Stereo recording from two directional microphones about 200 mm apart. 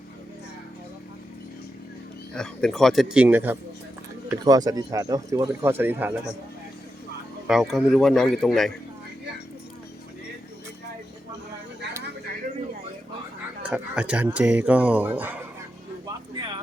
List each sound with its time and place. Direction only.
2.3 s speech: 5° left (ahead or behind)
7.4 s speech: centre (ahead or behind)
13.6 s speech: 5° right (ahead or behind)